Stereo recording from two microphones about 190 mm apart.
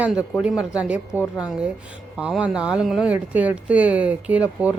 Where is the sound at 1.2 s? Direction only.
20° left (ahead or behind).